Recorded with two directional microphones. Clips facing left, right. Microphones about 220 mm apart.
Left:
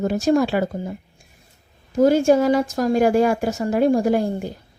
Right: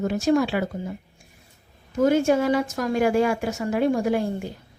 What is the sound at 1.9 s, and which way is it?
A woman's voice, 35° left (ahead or behind).